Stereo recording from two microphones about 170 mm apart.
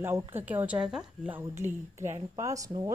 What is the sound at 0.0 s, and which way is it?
Speech, 15° right (ahead or behind).